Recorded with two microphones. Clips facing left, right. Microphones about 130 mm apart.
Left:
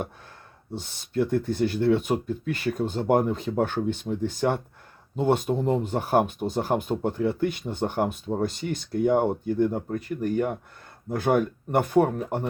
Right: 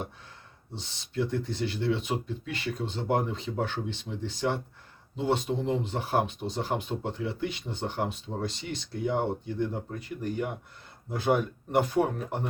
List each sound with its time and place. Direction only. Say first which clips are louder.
0.7 s speech: left 8 dB; 50° left (ahead or behind)